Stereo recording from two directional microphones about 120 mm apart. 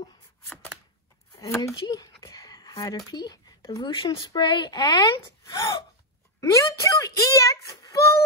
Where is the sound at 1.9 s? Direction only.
30° left (ahead or behind).